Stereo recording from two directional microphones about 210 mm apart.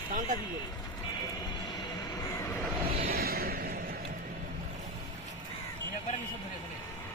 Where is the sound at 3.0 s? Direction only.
45° right (ahead or behind).